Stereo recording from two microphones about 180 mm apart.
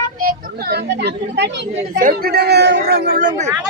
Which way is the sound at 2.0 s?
55° right (ahead or behind).